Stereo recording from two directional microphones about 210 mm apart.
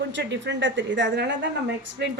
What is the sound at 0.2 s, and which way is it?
A woman's voice, 55° right (ahead or behind).